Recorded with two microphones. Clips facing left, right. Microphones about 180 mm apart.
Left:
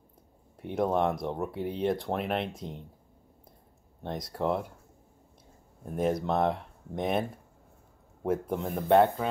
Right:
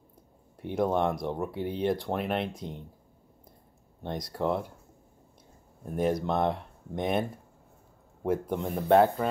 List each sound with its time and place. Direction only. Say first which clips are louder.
0.6 s speech: even; centre (ahead or behind)
4.0 s speech: right 1 dB; centre (ahead or behind)
5.9 s speech: right 1 dB; centre (ahead or behind)